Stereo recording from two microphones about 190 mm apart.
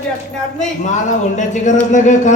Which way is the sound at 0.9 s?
40° left (ahead or behind).